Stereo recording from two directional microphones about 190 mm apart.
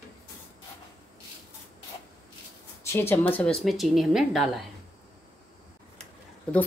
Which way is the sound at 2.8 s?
15° left (ahead or behind).